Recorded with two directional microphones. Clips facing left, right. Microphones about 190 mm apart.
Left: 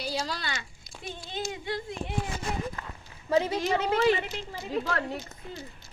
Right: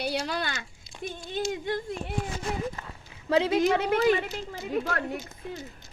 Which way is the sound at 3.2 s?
80° right.